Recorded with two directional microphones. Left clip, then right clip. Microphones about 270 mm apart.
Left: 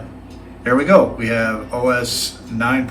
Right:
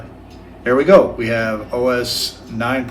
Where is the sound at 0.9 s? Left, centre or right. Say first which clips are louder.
Right 2 dB; centre.